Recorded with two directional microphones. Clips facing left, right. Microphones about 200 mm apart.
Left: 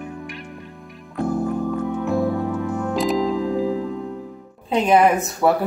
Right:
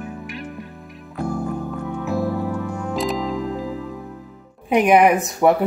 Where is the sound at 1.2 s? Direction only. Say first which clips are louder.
Left 3 dB; 5° left (ahead or behind).